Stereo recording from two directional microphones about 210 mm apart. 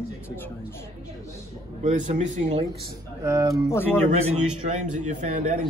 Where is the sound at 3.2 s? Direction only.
15° right (ahead or behind).